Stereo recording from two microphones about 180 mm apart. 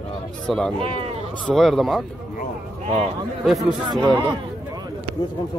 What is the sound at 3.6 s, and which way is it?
Speech, 20° right (ahead or behind).